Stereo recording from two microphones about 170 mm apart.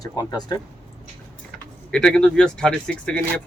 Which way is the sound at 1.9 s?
5° left (ahead or behind).